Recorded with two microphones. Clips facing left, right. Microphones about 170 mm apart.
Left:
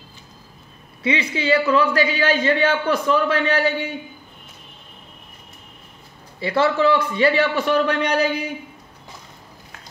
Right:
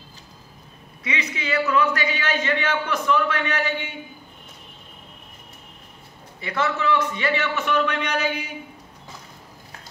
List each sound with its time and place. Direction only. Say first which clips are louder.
1.0 s a man's voice: left 8 dB; 30° left (ahead or behind)
6.4 s a man's voice: left 7 dB; 30° left (ahead or behind)